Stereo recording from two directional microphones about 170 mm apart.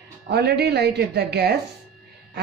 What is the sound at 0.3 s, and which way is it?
A woman's voice, 75° right (ahead or behind).